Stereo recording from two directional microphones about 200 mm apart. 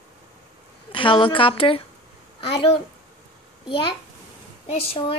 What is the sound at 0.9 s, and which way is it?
A child's voice, 25° left (ahead or behind).